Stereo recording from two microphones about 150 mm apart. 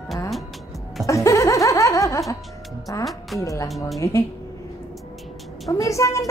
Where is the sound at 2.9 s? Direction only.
20° left (ahead or behind).